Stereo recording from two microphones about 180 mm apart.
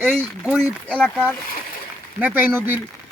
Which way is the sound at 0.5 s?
5° left (ahead or behind).